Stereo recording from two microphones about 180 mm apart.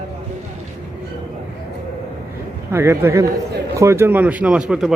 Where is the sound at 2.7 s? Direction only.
15° right (ahead or behind).